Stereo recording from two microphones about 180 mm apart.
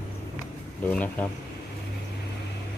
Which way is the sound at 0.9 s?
10° left (ahead or behind).